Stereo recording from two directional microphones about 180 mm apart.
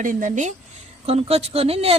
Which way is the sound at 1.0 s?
35° right (ahead or behind).